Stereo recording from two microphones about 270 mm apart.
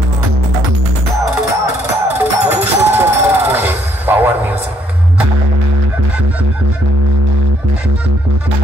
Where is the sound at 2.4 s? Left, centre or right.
Centre.